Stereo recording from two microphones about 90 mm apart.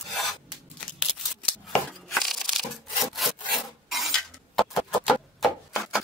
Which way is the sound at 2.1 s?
5° left (ahead or behind).